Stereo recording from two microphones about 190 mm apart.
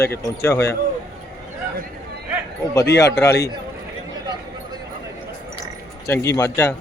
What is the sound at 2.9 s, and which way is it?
Speech, 15° left (ahead or behind).